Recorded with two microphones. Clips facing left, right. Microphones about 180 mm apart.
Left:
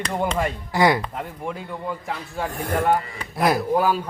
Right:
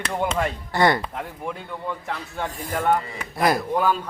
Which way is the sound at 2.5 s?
65° left (ahead or behind).